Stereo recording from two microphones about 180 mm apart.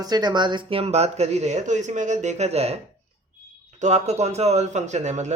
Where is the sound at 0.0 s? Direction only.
20° right (ahead or behind).